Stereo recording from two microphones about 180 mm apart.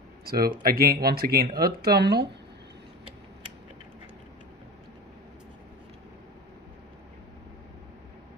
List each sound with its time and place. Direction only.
0.2 s speech: 55° right (ahead or behind)